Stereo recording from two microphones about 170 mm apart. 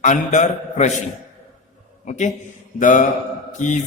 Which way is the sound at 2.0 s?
45° left (ahead or behind).